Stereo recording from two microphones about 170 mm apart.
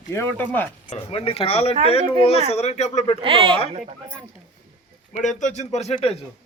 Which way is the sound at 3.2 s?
30° right (ahead or behind).